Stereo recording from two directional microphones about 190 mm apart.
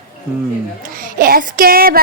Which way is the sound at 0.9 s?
45° right (ahead or behind).